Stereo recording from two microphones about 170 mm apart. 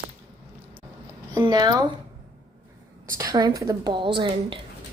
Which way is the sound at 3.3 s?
20° right (ahead or behind).